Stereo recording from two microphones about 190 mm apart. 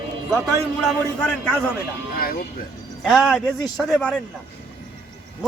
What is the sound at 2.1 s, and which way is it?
Speech, 50° left (ahead or behind).